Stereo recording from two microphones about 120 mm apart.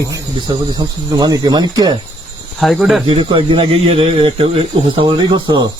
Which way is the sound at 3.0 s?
45° right (ahead or behind).